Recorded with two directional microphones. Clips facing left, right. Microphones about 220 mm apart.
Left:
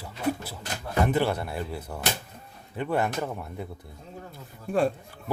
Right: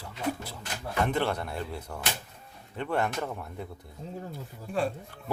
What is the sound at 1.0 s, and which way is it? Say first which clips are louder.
A man's voice: left 3 dB; 5° left (ahead or behind).